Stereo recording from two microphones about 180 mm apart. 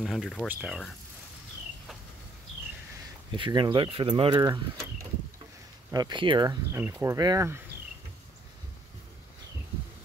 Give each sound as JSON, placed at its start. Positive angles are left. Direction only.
{"t": 0.0, "sound": "speech", "side_deg": 0}
{"t": 3.3, "sound": "speech", "side_deg": -25}
{"t": 5.9, "sound": "speech", "side_deg": -25}